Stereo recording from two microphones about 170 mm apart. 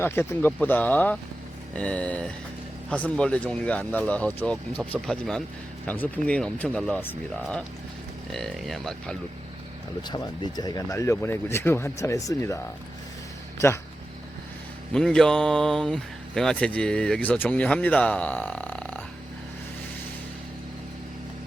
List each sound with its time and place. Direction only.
0.0 s speech: 15° left (ahead or behind)
10.1 s speech: 25° left (ahead or behind)
14.9 s speech: 5° left (ahead or behind)